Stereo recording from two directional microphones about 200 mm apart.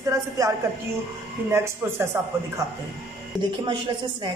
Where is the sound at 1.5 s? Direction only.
10° right (ahead or behind).